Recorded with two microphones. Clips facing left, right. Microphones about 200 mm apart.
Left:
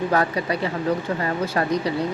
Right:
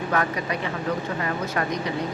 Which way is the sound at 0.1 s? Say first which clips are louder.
Left 3 dB; 35° left (ahead or behind).